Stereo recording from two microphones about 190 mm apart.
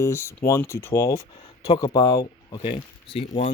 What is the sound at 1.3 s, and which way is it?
Speech, 30° left (ahead or behind).